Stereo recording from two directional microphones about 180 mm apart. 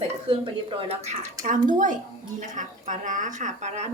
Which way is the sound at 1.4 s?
45° right (ahead or behind).